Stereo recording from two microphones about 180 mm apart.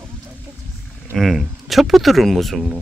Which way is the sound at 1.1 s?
Centre (ahead or behind).